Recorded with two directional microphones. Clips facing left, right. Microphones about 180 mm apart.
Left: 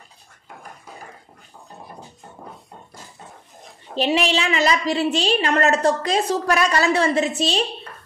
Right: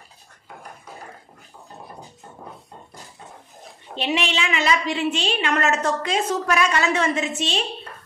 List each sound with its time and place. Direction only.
3.9 s a woman's voice: 35° left (ahead or behind)